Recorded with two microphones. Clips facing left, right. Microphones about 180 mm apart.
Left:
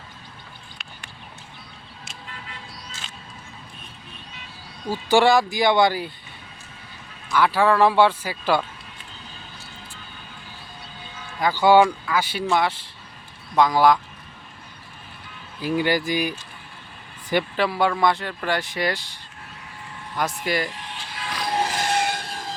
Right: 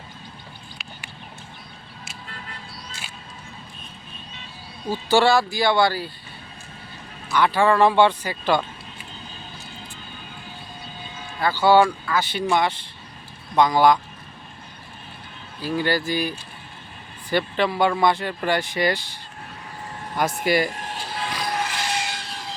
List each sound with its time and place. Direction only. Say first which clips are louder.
4.9 s speech: left 1 dB; 15° left (ahead or behind)
7.3 s speech: even; 5° left (ahead or behind)
11.3 s speech: left 1 dB; 15° left (ahead or behind)
15.6 s speech: left 1 dB; 15° left (ahead or behind)
17.6 s speech: right 2 dB; centre (ahead or behind)
20.4 s speech: right 6 dB; 5° right (ahead or behind)
20.7 s music: right 5 dB; 45° right (ahead or behind)
21.5 s music: left 7 dB; 30° left (ahead or behind)
21.8 s vehicle: left 5 dB; 55° left (ahead or behind)